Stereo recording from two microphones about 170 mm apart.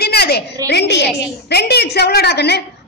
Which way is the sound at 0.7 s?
85° left.